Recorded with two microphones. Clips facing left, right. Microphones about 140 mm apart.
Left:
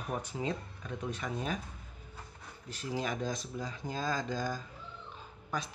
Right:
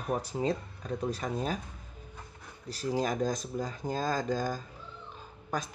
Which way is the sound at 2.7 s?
40° right (ahead or behind).